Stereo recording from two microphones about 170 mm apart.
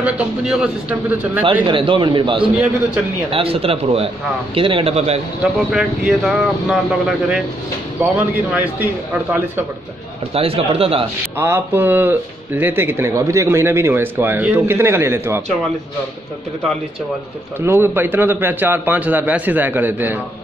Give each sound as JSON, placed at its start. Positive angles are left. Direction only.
{"t": 0.0, "sound": "a man's voice", "side_deg": -5}
{"t": 1.4, "sound": "a man's voice", "side_deg": -30}
{"t": 5.7, "sound": "a man's voice", "side_deg": -5}
{"t": 10.3, "sound": "a man's voice", "side_deg": -35}
{"t": 11.3, "sound": "a man's voice", "side_deg": -15}
{"t": 17.6, "sound": "a man's voice", "side_deg": -15}